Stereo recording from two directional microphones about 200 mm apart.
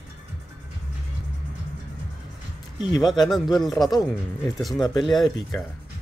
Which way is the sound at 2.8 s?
20° left (ahead or behind).